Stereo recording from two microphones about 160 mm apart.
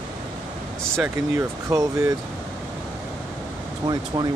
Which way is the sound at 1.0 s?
20° right (ahead or behind).